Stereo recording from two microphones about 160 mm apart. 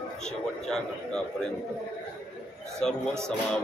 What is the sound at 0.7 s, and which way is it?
Speech, 5° left (ahead or behind).